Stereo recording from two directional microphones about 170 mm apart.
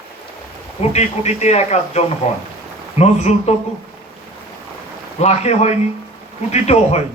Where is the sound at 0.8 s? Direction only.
40° left (ahead or behind).